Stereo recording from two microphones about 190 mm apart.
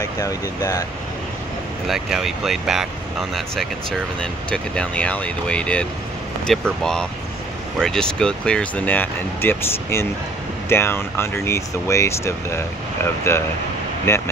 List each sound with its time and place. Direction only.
0.0 s speech: 20° left (ahead or behind)
1.9 s speech: centre (ahead or behind)